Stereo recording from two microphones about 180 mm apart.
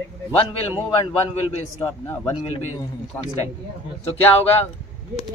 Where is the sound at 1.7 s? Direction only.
15° left (ahead or behind).